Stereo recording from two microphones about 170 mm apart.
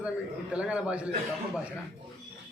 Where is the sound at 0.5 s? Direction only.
5° right (ahead or behind).